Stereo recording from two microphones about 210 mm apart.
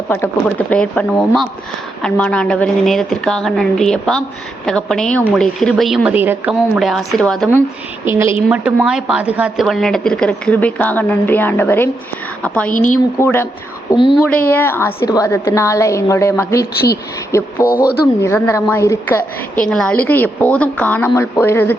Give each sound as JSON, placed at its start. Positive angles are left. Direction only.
{"t": 0.1, "sound": "a woman's voice", "side_deg": 5}
{"t": 12.7, "sound": "a woman's voice", "side_deg": 40}
{"t": 13.1, "sound": "a woman's voice", "side_deg": 10}
{"t": 13.9, "sound": "a woman's voice", "side_deg": 25}
{"t": 14.2, "sound": "a woman's voice", "side_deg": 5}
{"t": 18.0, "sound": "a woman's voice", "side_deg": 15}